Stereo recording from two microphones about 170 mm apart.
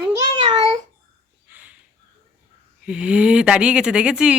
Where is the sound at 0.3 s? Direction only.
35° right (ahead or behind).